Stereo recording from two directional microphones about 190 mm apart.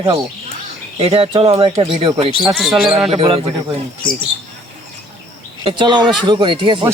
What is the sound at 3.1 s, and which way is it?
Speech, 30° right (ahead or behind).